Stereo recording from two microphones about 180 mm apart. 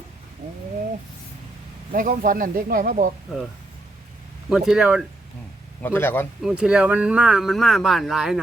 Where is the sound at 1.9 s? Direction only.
50° right (ahead or behind).